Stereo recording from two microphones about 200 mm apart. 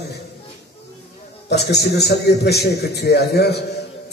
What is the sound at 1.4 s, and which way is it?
A man's voice, 55° left (ahead or behind).